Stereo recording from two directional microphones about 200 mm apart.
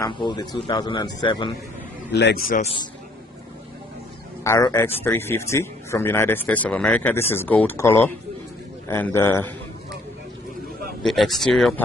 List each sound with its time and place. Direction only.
0.0 s a man's voice: 20° left (ahead or behind)
2.1 s a man's voice: 50° left (ahead or behind)
2.6 s a man's voice: 25° left (ahead or behind)
4.4 s a man's voice: 15° left (ahead or behind)
11.0 s speech: centre (ahead or behind)